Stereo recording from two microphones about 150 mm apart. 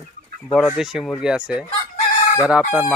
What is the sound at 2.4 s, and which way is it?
Chicken, 5° right (ahead or behind).